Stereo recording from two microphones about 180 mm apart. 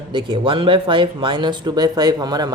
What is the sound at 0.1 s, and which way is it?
Speech, 25° right (ahead or behind).